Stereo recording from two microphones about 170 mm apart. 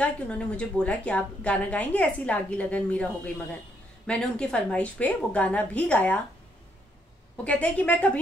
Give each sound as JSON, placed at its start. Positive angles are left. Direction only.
{"t": 0.0, "sound": "a woman's voice", "side_deg": 5}
{"t": 4.1, "sound": "a woman's voice", "side_deg": 5}
{"t": 7.4, "sound": "a woman's voice", "side_deg": 5}